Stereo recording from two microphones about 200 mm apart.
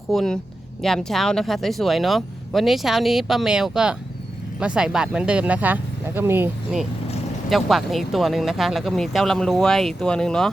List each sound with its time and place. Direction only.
0.1 s speech: centre (ahead or behind)